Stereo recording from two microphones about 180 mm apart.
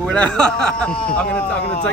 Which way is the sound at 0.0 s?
5° left (ahead or behind).